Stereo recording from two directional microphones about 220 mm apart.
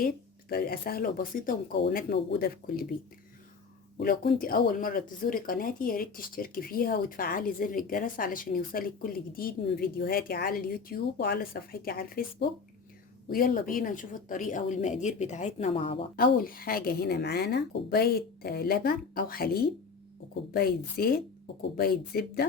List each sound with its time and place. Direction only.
0.0 s speech: 45° left (ahead or behind)
3.9 s speech: 45° left (ahead or behind); by 16.0 s 25° left (ahead or behind)
16.1 s speech: 40° left (ahead or behind)